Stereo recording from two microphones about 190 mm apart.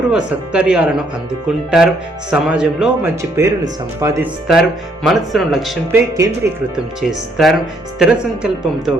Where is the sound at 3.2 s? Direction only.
15° right (ahead or behind).